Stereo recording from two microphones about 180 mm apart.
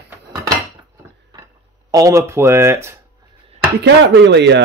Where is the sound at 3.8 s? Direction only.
75° right (ahead or behind).